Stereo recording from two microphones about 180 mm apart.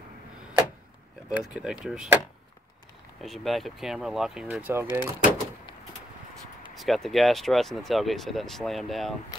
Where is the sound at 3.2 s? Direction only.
Centre (ahead or behind).